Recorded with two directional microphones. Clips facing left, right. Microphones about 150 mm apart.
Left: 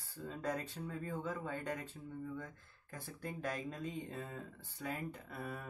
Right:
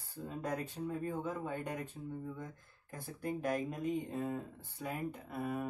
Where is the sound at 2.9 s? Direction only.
15° right (ahead or behind).